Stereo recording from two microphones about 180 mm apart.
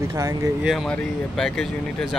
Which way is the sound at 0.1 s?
20° right (ahead or behind).